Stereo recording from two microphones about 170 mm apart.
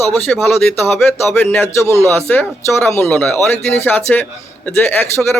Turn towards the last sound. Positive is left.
turn(degrees=10)  # may be behind; listen again after turning